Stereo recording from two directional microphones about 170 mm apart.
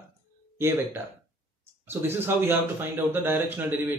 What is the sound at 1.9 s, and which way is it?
Speech, 15° right (ahead or behind).